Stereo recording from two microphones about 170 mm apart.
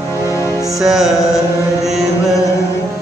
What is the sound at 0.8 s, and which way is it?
Music, centre (ahead or behind).